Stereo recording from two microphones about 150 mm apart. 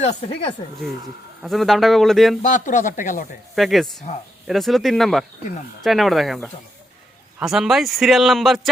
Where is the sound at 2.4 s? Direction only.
60° left (ahead or behind).